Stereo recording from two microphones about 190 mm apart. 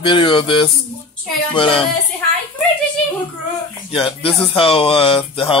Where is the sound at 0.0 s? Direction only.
25° left (ahead or behind).